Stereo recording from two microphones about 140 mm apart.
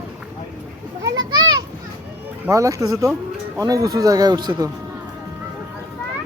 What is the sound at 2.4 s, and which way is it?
Speech, 20° right (ahead or behind).